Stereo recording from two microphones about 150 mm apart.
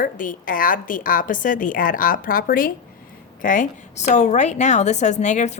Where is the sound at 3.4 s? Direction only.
60° left (ahead or behind).